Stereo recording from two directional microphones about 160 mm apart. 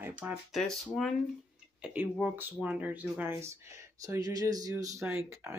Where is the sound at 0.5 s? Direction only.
Centre (ahead or behind).